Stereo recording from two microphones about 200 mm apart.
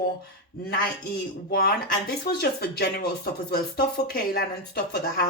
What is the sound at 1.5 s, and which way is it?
Speech, 50° left (ahead or behind).